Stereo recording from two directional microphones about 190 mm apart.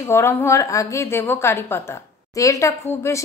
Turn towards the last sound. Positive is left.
turn(degrees=15)  # may be behind; listen again after turning